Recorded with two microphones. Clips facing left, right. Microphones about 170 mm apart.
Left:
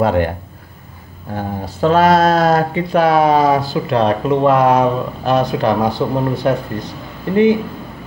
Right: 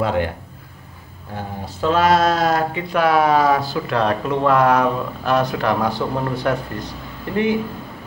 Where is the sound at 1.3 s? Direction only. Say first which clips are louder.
Left 6 dB; 45° left (ahead or behind).